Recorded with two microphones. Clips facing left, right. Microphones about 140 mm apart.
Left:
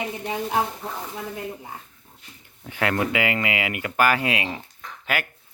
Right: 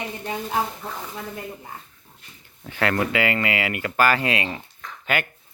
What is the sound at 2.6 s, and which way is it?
Speech, 10° left (ahead or behind).